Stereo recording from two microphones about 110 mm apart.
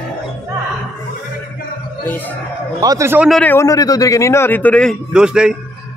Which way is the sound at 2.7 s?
35° right (ahead or behind).